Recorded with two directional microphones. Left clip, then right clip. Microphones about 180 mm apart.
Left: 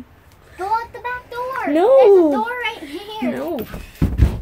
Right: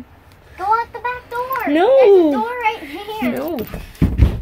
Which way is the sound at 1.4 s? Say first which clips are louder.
Right 1 dB; 10° right (ahead or behind).